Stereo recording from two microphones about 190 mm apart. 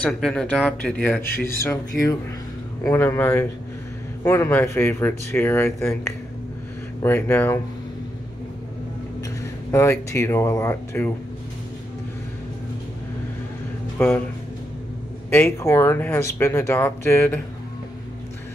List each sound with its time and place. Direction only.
0.0 s speech: 5° left (ahead or behind)
1.2 s speech: 50° left (ahead or behind)
1.6 s speech: 15° left (ahead or behind)
7.0 s speech: 10° left (ahead or behind)
9.4 s speech: 15° left (ahead or behind)
13.9 s speech: 10° left (ahead or behind)
15.2 s speech: 10° left (ahead or behind)